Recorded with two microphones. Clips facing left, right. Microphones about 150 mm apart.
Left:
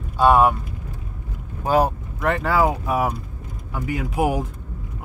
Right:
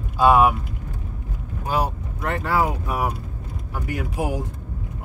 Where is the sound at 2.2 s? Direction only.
90° left.